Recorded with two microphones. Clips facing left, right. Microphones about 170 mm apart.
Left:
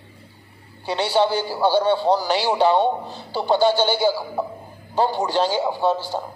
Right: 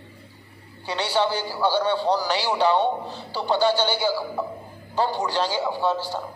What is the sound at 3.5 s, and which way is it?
Speech, 50° left (ahead or behind).